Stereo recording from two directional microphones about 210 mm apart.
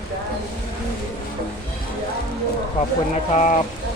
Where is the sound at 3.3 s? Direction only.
35° left (ahead or behind).